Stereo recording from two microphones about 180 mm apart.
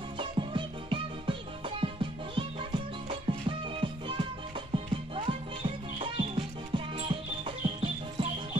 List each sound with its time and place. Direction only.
0.2 s music: 30° right (ahead or behind)